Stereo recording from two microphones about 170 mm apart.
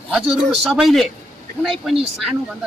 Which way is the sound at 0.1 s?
Centre (ahead or behind).